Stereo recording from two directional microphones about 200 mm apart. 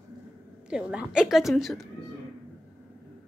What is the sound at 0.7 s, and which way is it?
A woman's voice, 5° right (ahead or behind).